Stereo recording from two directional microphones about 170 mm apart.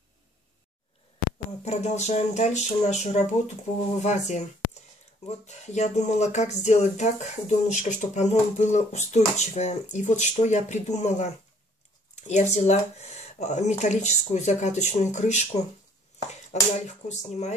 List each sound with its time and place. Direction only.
1.6 s speech: 40° left (ahead or behind)
5.5 s speech: 45° left (ahead or behind)
16.7 s speech: 40° left (ahead or behind)